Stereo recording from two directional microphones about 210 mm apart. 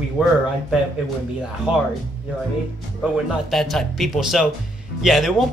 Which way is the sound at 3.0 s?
Centre (ahead or behind).